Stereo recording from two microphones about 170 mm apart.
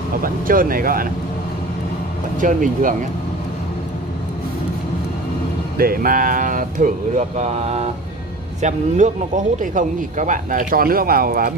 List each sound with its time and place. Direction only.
0.2 s speech: 55° right (ahead or behind)
2.4 s speech: 50° right (ahead or behind)
5.8 s speech: 60° right (ahead or behind)